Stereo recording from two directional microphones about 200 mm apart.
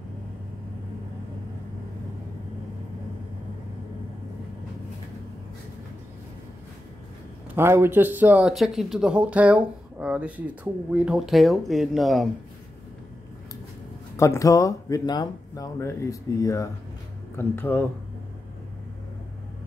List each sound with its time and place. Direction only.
7.5 s speech: 10° right (ahead or behind)
14.1 s speech: 15° left (ahead or behind)